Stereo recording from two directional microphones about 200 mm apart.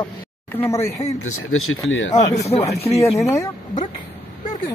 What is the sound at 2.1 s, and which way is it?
Speech, 35° left (ahead or behind).